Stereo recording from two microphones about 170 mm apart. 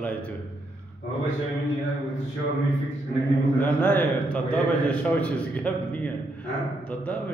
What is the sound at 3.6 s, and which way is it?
A man's voice, 10° left (ahead or behind).